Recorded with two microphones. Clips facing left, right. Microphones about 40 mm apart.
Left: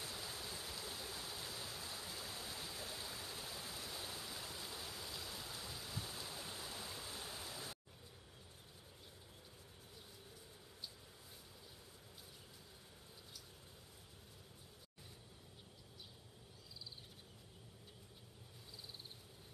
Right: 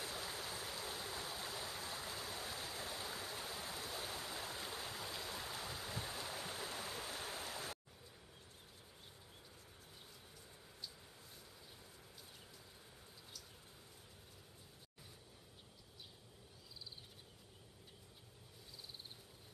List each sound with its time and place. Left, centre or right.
0.0 s stream: right
2.3 s stream: right